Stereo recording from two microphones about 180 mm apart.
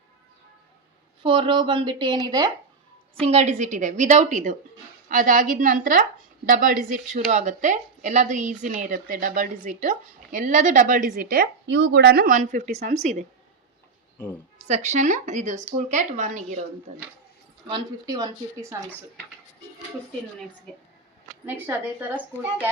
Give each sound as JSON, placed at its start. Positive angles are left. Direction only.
{"t": 1.2, "sound": "a woman's voice", "side_deg": -30}
{"t": 3.2, "sound": "a woman's voice", "side_deg": -35}
{"t": 11.6, "sound": "speech", "side_deg": -80}
{"t": 12.4, "sound": "a woman's voice", "side_deg": -40}
{"t": 14.7, "sound": "a woman's voice", "side_deg": -40}
{"t": 17.7, "sound": "a woman's voice", "side_deg": -20}
{"t": 21.4, "sound": "a woman's voice", "side_deg": -10}